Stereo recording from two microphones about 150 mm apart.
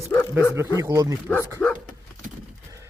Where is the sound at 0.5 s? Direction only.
20° right (ahead or behind).